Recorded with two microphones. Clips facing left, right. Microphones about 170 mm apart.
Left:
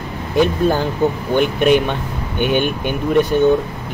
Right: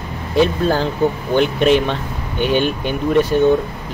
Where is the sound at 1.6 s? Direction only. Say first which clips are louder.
Left 1 dB; 10° left (ahead or behind).